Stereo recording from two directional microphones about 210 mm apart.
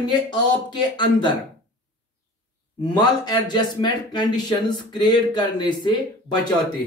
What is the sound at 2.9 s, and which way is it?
Speech, 20° left (ahead or behind).